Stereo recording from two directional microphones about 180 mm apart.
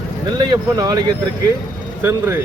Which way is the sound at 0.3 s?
25° right (ahead or behind).